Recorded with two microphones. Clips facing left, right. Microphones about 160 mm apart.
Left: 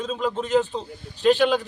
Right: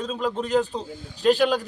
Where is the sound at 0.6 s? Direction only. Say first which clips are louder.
Even; 35° right (ahead or behind).